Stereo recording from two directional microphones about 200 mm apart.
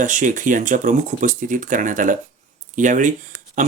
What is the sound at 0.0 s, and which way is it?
Speech, 40° right (ahead or behind).